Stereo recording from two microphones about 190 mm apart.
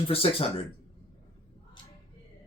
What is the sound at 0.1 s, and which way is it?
Speech, 30° left (ahead or behind).